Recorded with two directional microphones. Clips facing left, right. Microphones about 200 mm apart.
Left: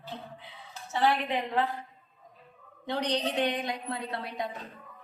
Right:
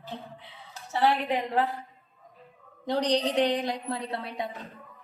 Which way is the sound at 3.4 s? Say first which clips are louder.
Right 4 dB; 35° right (ahead or behind).